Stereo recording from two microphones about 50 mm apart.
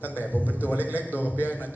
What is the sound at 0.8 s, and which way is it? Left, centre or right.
Speech, right.